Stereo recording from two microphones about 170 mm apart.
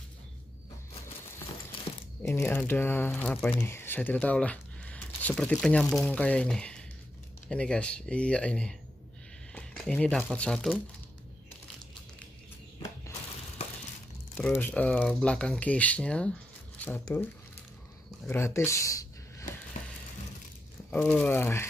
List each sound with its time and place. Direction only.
1.9 s a sound: 35° left (ahead or behind)
2.2 s speech: 15° left (ahead or behind)
3.6 s speech: 15° left (ahead or behind)
14.3 s speech: 10° left (ahead or behind)
18.3 s speech: 15° left (ahead or behind)
20.9 s speech: 5° left (ahead or behind)